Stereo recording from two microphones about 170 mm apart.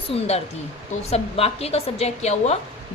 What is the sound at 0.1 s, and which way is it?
A woman's voice, 35° left (ahead or behind).